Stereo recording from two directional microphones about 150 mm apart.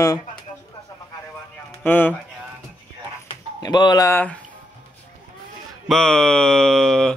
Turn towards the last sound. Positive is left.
turn(degrees=5)  # may be behind; listen again after turning